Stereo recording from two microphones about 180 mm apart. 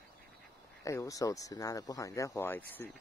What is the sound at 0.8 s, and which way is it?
Speech, 15° left (ahead or behind).